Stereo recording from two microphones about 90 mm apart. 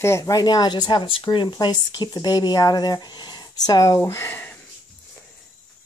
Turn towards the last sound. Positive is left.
turn(degrees=20)  # may be behind; listen again after turning